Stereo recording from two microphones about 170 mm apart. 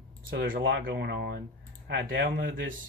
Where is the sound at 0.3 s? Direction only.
85° right.